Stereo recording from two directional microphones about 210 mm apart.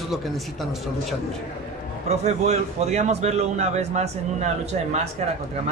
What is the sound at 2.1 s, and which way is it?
A man's voice, 30° right (ahead or behind).